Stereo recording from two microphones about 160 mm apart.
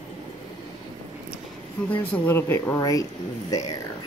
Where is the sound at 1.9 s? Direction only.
10° left (ahead or behind).